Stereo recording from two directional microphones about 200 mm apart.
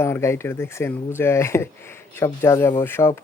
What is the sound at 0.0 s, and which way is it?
Speech, 15° left (ahead or behind).